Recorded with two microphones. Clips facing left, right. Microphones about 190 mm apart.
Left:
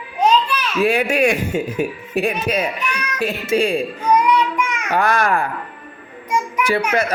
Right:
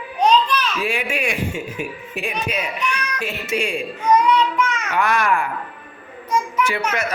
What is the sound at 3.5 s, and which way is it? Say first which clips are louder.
Speech: left 6 dB; 35° left (ahead or behind).